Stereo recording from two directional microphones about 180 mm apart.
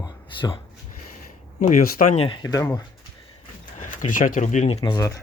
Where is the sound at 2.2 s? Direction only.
25° left (ahead or behind).